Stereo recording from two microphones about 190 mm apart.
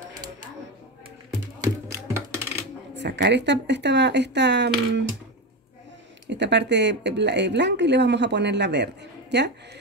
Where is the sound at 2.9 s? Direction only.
65° right (ahead or behind).